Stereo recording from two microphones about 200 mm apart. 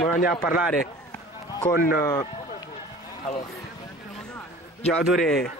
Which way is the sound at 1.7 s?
45° left (ahead or behind).